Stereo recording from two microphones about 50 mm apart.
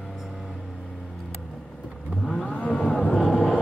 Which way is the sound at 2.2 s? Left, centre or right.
Centre.